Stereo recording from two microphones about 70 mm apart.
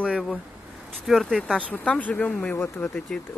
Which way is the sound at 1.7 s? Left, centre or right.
Left.